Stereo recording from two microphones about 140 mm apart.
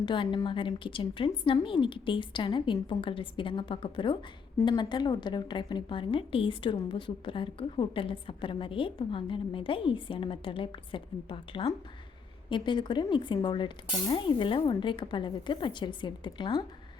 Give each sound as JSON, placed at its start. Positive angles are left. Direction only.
{"t": 0.0, "sound": "a woman's voice", "side_deg": 35}